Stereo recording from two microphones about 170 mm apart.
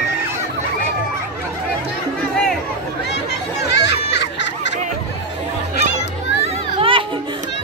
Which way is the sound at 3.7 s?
90° left.